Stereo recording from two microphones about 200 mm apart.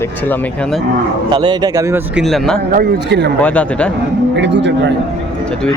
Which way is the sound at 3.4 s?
5° left (ahead or behind).